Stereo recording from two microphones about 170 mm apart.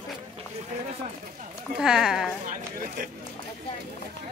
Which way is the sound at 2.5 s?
50° right (ahead or behind).